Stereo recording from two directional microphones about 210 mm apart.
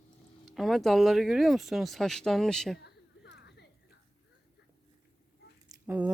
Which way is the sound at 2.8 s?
55° left (ahead or behind).